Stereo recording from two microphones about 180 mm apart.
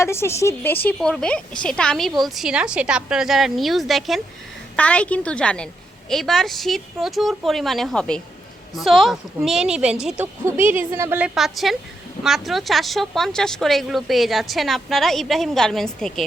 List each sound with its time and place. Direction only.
0.0 s a woman's voice: 15° left (ahead or behind)